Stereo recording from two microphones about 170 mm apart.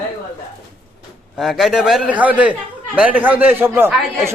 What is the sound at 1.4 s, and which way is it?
A man's voice, centre (ahead or behind).